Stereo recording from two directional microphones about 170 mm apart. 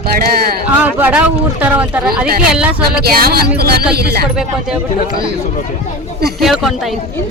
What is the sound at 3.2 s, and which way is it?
Speech, 65° right (ahead or behind).